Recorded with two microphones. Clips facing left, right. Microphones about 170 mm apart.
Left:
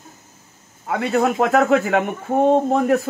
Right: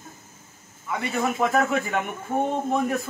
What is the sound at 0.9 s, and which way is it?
A man's voice, 65° left (ahead or behind).